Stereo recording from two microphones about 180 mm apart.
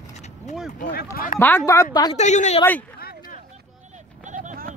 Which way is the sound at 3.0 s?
55° left (ahead or behind).